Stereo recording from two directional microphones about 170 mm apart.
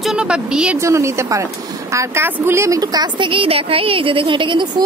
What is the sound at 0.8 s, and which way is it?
A woman's voice, 15° right (ahead or behind).